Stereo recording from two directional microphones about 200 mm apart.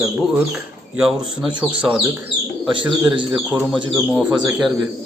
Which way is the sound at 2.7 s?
25° right (ahead or behind).